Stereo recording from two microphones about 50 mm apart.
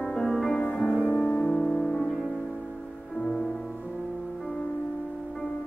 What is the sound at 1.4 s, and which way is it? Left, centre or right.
Music, centre.